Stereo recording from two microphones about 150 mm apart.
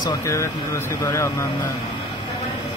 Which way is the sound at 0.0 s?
20° left (ahead or behind).